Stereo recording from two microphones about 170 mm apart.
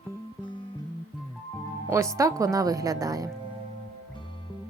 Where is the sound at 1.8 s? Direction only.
15° right (ahead or behind).